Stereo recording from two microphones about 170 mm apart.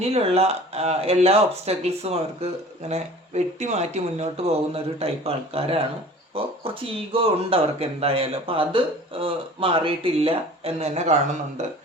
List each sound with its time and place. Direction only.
0.0 s speech: 35° right (ahead or behind)